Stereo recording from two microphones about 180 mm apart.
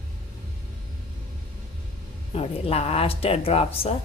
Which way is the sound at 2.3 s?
35° left (ahead or behind).